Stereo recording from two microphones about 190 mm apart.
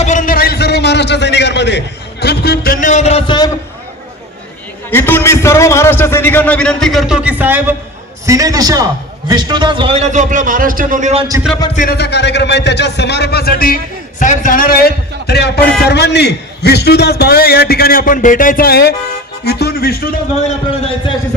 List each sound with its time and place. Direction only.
0.0 s a sound: 40° left (ahead or behind); by 1.8 s 65° left (ahead or behind)
2.2 s a man's voice: 55° left (ahead or behind); by 3.5 s 25° left (ahead or behind)
4.9 s a man's voice: 10° left (ahead or behind); by 11.2 s 40° right (ahead or behind)
11.2 s a man's voice: 20° right (ahead or behind)
11.7 s a man's voice: 50° left (ahead or behind)
20.4 s a man's voice: 30° left (ahead or behind)